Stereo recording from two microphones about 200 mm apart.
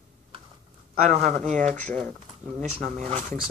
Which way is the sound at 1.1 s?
35° right (ahead or behind).